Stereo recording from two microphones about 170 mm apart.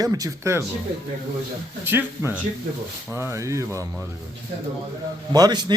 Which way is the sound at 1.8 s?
15° right (ahead or behind).